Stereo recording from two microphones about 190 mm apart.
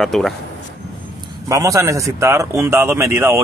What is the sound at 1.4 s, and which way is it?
A man's voice, 15° right (ahead or behind).